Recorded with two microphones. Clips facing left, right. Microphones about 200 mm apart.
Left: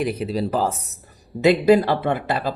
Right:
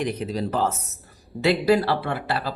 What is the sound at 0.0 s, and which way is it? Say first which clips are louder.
Speech: left 3 dB; 10° left (ahead or behind).